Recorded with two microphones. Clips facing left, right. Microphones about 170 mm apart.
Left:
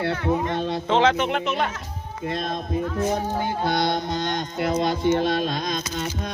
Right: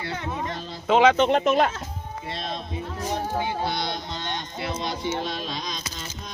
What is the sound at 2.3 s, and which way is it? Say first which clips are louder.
Music: left 7 dB; 50° left (ahead or behind).